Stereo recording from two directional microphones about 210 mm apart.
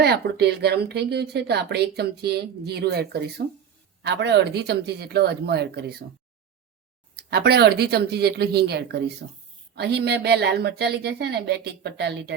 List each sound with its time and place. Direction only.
0.0 s speech: 50° right (ahead or behind)
7.2 s speech: 50° right (ahead or behind)